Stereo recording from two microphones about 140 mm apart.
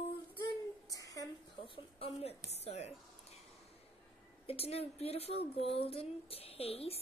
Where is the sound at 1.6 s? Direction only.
40° left (ahead or behind).